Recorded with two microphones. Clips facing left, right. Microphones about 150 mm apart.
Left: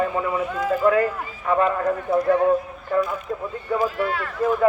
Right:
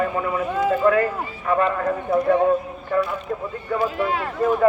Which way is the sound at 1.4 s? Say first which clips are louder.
Left 1 dB; 10° left (ahead or behind).